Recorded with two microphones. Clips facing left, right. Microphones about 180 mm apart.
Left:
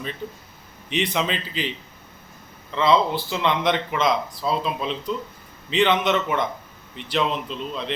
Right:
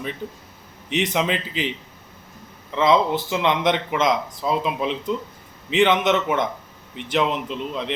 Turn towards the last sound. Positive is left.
turn(degrees=-15)  # may be behind; listen again after turning